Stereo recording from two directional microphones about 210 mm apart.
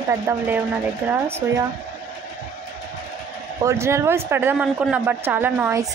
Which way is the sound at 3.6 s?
15° right (ahead or behind).